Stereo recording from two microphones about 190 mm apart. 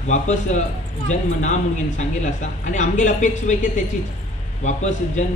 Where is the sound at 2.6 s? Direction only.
40° left (ahead or behind).